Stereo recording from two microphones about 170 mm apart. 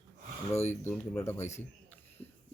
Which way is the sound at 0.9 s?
15° left (ahead or behind).